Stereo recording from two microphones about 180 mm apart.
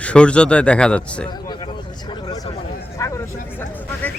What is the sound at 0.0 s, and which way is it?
Speech, 5° left (ahead or behind).